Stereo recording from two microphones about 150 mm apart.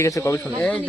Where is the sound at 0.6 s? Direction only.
10° left (ahead or behind).